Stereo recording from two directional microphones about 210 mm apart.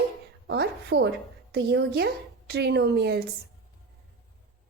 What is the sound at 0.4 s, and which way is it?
A woman's voice, 50° right (ahead or behind).